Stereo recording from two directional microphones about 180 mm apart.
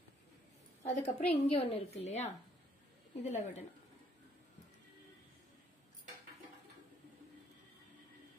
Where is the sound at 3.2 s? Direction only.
40° left (ahead or behind).